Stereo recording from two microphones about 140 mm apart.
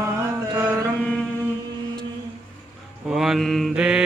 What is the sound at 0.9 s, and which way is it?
Music, 5° left (ahead or behind).